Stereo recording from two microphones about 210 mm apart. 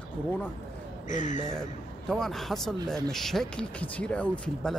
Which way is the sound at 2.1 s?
Centre (ahead or behind).